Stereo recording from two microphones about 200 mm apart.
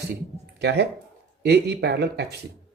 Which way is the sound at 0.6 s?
55° right (ahead or behind).